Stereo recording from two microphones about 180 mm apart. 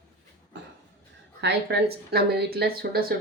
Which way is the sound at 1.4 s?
70° right (ahead or behind).